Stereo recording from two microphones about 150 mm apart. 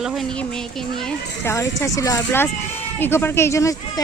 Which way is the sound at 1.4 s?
20° left (ahead or behind).